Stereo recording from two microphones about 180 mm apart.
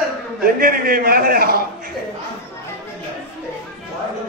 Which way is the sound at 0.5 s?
55° right (ahead or behind).